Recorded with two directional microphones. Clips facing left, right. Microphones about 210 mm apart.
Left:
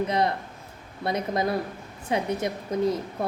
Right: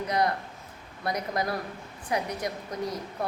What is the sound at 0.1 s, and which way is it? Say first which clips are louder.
A woman's voice: left 2 dB; 25° left (ahead or behind).